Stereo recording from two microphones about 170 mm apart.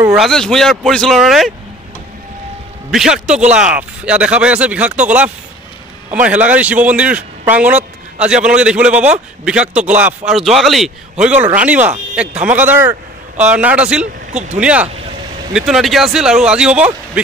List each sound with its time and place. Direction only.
0.0 s speech: 5° right (ahead or behind)
2.9 s a man's voice: 5° right (ahead or behind)
14.3 s speech: 45° right (ahead or behind)
14.6 s a man's voice: 5° right (ahead or behind)